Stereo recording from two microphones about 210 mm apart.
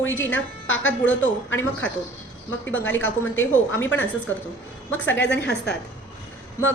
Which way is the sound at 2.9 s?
65° left (ahead or behind).